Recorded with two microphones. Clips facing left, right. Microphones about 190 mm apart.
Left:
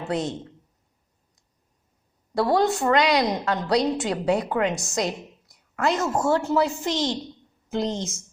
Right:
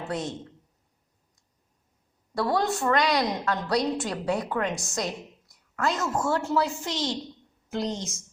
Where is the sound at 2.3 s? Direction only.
25° left (ahead or behind).